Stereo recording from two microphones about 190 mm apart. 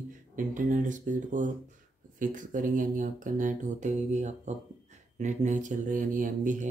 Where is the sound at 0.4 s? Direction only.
45° right (ahead or behind).